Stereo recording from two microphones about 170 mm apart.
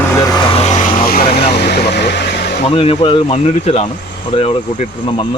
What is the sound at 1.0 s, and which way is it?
Vehicle, 60° left (ahead or behind).